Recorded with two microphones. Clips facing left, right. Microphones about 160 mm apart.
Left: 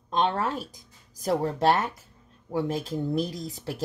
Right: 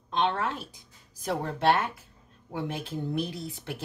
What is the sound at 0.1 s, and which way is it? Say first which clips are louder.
A woman's voice: left 2 dB; 40° left (ahead or behind).